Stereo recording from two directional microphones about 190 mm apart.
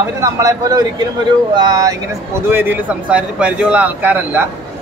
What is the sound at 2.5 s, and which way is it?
Speech, 10° right (ahead or behind).